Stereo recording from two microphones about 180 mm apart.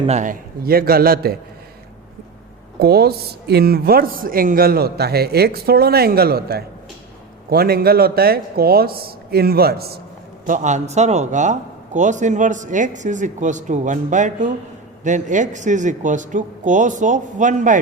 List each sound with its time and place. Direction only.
0.0 s speech: 40° right (ahead or behind); by 1.4 s 55° right (ahead or behind)
2.7 s speech: 60° right (ahead or behind)
10.4 s speech: 45° right (ahead or behind)